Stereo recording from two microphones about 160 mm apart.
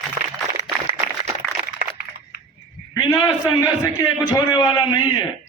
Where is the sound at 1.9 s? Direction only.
30° left (ahead or behind).